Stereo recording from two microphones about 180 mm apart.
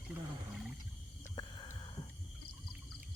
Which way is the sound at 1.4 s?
25° left (ahead or behind).